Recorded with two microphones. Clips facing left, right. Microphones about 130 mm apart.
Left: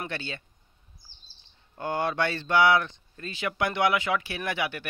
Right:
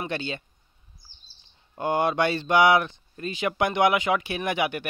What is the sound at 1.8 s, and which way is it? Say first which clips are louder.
Speech: right 4 dB; 15° right (ahead or behind).